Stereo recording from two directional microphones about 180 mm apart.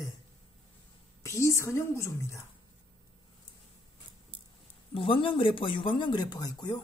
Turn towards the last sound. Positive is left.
turn(degrees=25)  # may be behind; listen again after turning